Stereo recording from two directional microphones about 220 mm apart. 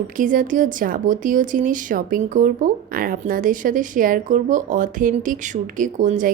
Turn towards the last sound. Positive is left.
turn(degrees=-35)  # may be behind; listen again after turning